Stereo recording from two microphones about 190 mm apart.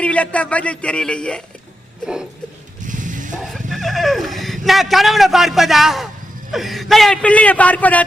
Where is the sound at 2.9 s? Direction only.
45° right (ahead or behind).